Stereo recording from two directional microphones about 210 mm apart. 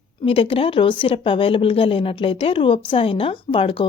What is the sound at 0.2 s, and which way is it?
A woman's voice, 25° left (ahead or behind).